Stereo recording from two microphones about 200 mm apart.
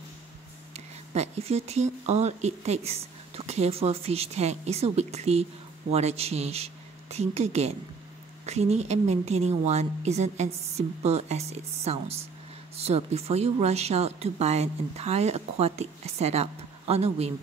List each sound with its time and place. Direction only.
0.7 s speech: 30° right (ahead or behind)